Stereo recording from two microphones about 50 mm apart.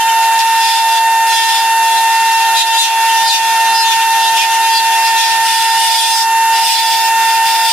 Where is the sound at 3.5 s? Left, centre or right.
Centre.